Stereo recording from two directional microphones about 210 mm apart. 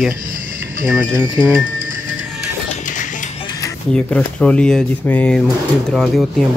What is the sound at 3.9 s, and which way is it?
Speech, 5° left (ahead or behind).